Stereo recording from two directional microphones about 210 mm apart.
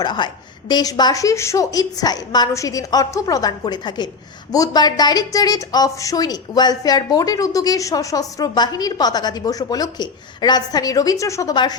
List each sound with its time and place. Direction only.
0.0 s a woman's voice: 20° left (ahead or behind)